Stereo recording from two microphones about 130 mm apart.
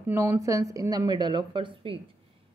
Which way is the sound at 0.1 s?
20° right (ahead or behind).